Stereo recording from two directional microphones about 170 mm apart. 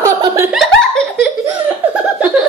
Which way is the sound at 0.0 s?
20° right (ahead or behind).